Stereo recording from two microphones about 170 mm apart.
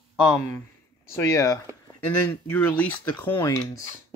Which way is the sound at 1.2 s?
20° left (ahead or behind).